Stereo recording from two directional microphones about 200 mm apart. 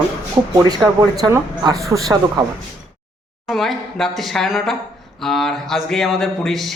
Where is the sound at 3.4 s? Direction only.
Centre (ahead or behind).